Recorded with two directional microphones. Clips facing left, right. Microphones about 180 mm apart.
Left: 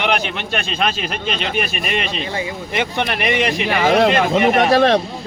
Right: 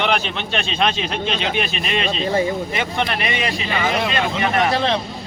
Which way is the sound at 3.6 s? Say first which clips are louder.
Left 9 dB; 65° left (ahead or behind).